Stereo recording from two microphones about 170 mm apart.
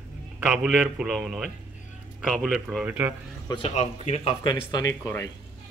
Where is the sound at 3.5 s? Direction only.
35° left (ahead or behind).